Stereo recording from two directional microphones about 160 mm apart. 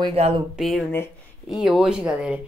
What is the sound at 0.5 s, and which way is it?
Speech, centre (ahead or behind).